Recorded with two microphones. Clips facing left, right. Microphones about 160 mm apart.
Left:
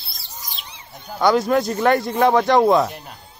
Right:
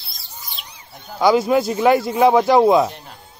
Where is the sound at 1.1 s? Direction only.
Centre (ahead or behind).